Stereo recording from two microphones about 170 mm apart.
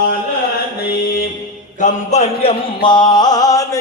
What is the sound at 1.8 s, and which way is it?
Speech, 45° left (ahead or behind).